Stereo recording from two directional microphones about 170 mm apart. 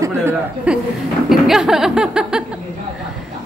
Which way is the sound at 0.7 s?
5° right (ahead or behind).